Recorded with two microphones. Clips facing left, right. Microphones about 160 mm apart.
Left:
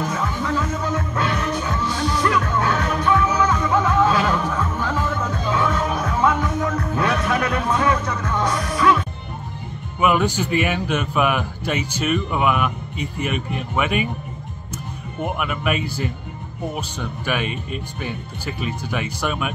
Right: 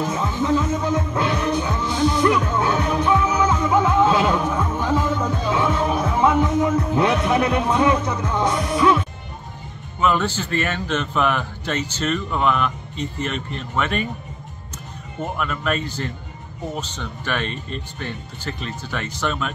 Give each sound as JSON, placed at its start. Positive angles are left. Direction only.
{"t": 0.0, "sound": "music", "side_deg": -25}
{"t": 9.9, "sound": "speech", "side_deg": 10}
{"t": 15.2, "sound": "speech", "side_deg": 10}